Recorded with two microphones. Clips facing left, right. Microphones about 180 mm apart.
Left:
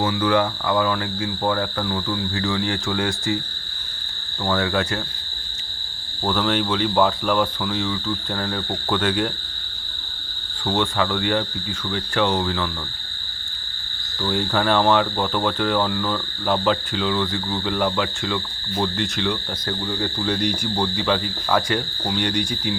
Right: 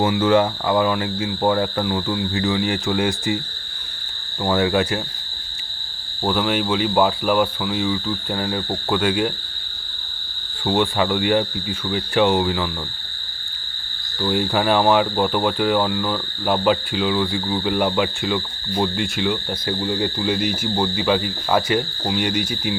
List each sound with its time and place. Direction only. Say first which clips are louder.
0.0 s speech: right 3 dB; 25° right (ahead or behind)
4.4 s speech: right 3 dB; 20° right (ahead or behind)
6.2 s speech: right 1 dB; 10° right (ahead or behind)
10.7 s speech: right 3 dB; 20° right (ahead or behind)
14.2 s speech: right 2 dB; 15° right (ahead or behind)